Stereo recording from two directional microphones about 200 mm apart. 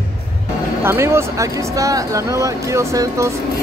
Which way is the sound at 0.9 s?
15° right (ahead or behind).